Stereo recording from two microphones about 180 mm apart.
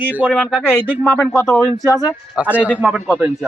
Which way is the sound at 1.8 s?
15° right (ahead or behind).